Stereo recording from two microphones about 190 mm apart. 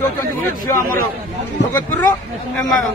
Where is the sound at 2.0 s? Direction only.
15° left (ahead or behind).